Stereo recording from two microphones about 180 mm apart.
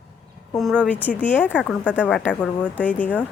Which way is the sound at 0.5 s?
5° left (ahead or behind).